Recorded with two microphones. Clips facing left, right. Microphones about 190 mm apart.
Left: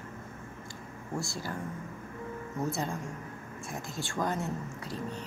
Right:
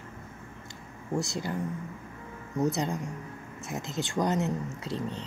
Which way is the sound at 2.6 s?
20° right (ahead or behind).